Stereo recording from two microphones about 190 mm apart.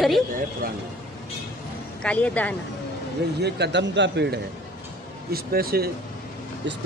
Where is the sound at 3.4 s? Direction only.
65° right (ahead or behind).